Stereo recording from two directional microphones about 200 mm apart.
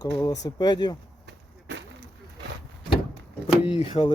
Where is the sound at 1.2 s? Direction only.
65° right (ahead or behind).